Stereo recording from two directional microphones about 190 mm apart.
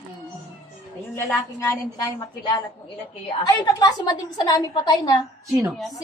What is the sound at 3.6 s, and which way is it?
A woman's voice, 20° left (ahead or behind).